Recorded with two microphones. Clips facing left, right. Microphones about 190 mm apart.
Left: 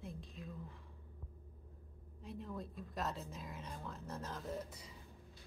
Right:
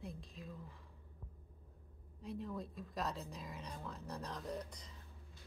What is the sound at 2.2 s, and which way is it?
Speech, centre (ahead or behind).